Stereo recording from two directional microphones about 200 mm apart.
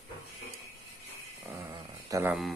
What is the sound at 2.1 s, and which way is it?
Speech, 15° right (ahead or behind).